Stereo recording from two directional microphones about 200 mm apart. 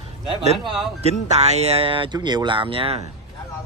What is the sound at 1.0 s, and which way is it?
Speech, 35° right (ahead or behind).